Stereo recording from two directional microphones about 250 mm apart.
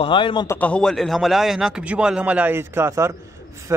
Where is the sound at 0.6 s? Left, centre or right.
Centre.